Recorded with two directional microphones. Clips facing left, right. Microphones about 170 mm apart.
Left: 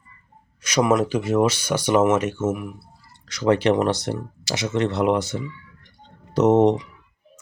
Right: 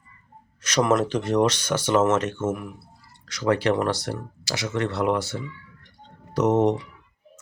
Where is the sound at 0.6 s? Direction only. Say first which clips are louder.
Left 2 dB; 10° left (ahead or behind).